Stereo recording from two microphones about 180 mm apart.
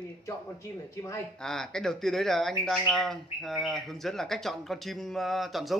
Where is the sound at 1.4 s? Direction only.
5° left (ahead or behind).